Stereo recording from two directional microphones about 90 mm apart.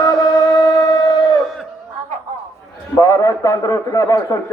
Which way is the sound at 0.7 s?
40° left (ahead or behind).